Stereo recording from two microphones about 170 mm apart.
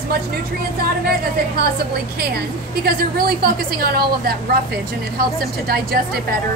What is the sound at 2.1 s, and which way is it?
A woman's voice, 65° right (ahead or behind).